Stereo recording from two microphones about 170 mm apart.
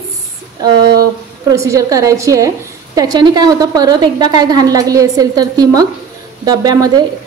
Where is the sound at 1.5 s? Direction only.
20° right (ahead or behind).